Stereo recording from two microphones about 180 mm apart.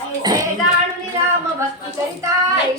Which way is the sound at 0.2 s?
20° right (ahead or behind).